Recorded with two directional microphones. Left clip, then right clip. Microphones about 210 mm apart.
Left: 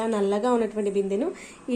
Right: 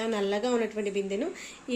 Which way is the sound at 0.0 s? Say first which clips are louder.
Left 4 dB; centre (ahead or behind).